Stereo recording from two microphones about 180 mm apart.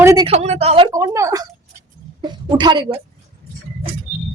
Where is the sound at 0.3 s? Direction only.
35° right (ahead or behind).